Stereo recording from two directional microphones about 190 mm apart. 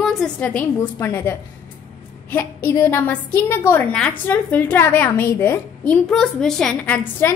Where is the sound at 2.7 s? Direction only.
10° left (ahead or behind).